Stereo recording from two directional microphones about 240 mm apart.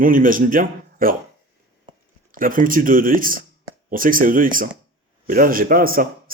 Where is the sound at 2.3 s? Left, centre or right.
Right.